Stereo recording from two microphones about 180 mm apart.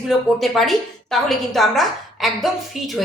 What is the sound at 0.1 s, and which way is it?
A woman's voice, centre (ahead or behind).